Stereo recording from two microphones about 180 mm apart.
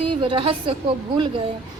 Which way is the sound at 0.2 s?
30° right (ahead or behind).